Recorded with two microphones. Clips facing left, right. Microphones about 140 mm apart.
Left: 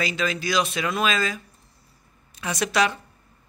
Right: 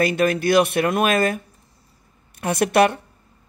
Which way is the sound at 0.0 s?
55° right (ahead or behind).